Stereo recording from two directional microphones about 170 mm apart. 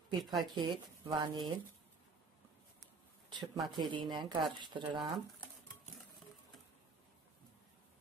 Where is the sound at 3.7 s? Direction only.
25° right (ahead or behind).